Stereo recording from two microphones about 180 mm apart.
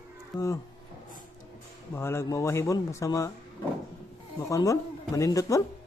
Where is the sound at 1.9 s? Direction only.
15° left (ahead or behind).